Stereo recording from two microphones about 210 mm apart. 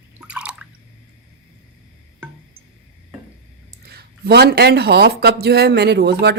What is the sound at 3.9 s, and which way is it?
Speech, 50° right (ahead or behind).